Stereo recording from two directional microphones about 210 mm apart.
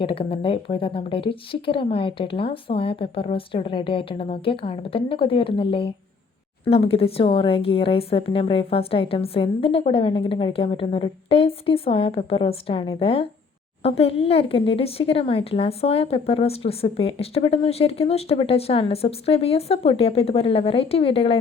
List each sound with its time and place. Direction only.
0.0 s speech: 25° left (ahead or behind)